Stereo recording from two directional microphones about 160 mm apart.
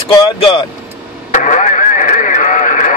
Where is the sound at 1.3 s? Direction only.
50° left (ahead or behind).